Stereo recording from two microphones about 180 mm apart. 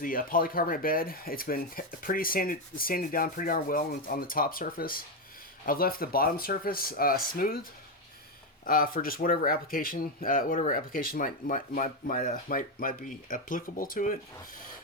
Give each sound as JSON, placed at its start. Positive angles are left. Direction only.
{"t": 0.0, "sound": "speech", "side_deg": 50}
{"t": 8.6, "sound": "speech", "side_deg": 50}